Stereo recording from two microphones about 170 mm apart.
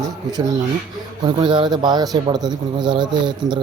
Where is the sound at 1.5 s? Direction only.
25° right (ahead or behind).